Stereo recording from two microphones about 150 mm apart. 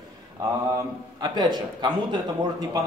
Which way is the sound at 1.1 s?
30° right (ahead or behind).